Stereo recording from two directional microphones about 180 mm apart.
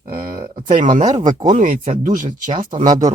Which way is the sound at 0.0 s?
50° right (ahead or behind).